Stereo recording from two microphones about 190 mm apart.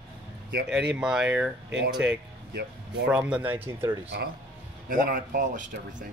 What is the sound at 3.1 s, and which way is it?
Speech, 5° right (ahead or behind).